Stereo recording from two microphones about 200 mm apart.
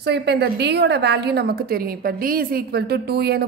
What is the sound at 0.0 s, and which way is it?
A woman's voice, 55° right (ahead or behind).